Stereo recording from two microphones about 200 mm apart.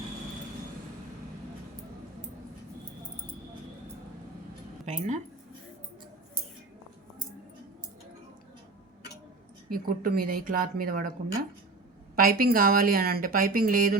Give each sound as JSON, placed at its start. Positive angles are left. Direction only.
{"t": 4.9, "sound": "speech", "side_deg": -35}
{"t": 9.6, "sound": "speech", "side_deg": -45}
{"t": 12.1, "sound": "speech", "side_deg": -45}